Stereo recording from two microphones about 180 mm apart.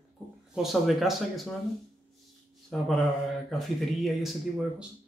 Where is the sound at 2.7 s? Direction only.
5° left (ahead or behind).